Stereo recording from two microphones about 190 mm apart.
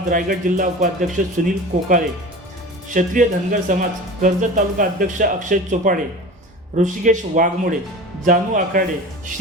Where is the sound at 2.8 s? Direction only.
40° right (ahead or behind).